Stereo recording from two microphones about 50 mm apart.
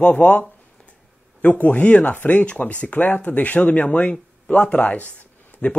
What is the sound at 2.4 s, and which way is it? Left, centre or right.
Speech, left.